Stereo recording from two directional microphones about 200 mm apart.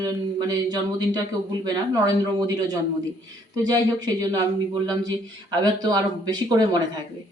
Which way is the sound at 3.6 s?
20° right (ahead or behind).